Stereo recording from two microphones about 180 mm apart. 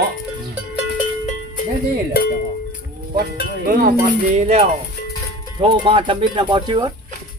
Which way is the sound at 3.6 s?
50° right (ahead or behind).